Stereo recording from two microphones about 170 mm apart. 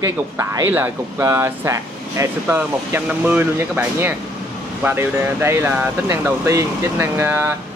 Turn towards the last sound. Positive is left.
turn(degrees=-15)  # may be behind; listen again after turning